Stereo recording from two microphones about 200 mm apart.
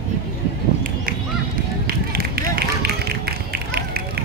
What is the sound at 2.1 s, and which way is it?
Run, 50° right (ahead or behind).